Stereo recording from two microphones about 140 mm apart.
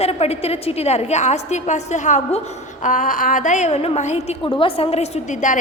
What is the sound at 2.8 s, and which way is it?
A woman's voice, 70° left (ahead or behind).